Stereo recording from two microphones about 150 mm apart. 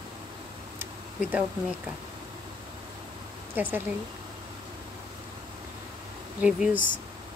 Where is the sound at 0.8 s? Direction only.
10° right (ahead or behind).